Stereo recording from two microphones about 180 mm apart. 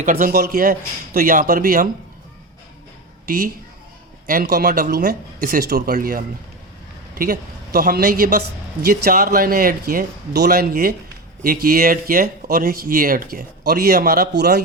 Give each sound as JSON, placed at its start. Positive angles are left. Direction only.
{"t": 0.0, "sound": "speech", "side_deg": -45}
{"t": 3.2, "sound": "a woman's voice", "side_deg": -55}